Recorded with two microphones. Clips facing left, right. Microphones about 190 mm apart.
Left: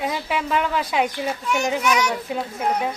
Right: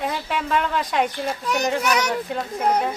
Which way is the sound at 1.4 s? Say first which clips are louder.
Even; 35° right (ahead or behind).